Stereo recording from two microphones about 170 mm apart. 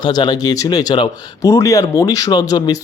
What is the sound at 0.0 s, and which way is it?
Speech, 25° left (ahead or behind).